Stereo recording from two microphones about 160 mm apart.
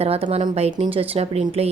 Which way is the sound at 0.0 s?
40° right (ahead or behind).